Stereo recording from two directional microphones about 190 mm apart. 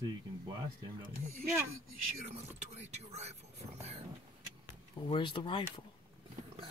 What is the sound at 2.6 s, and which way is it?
Speech, 35° right (ahead or behind).